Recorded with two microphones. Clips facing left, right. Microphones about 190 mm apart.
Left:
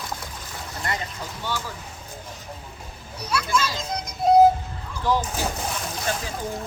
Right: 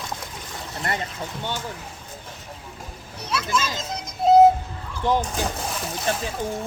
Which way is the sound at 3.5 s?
20° right (ahead or behind).